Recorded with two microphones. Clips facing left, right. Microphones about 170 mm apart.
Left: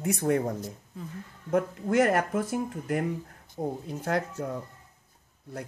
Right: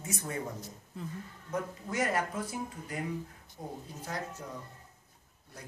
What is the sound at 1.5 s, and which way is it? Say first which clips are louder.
Speech: left 10 dB; 60° left (ahead or behind).